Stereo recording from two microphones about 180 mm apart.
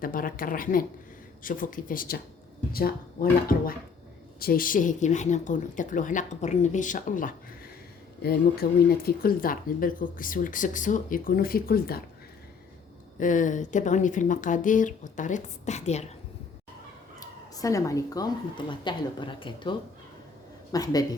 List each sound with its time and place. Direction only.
0.0 s speech: 50° left (ahead or behind)
8.6 s speech: 60° left (ahead or behind)
13.1 s speech: 45° left (ahead or behind)
17.2 s a woman's voice: 20° left (ahead or behind)
20.7 s a woman's voice: 20° left (ahead or behind)